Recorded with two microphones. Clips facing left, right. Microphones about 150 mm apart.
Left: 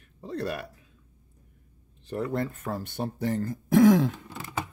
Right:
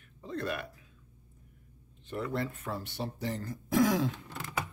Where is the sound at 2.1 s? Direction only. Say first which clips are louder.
Left 5 dB; 40° left (ahead or behind).